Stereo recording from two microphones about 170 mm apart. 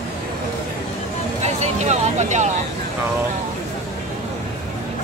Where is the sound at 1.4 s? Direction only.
40° right (ahead or behind).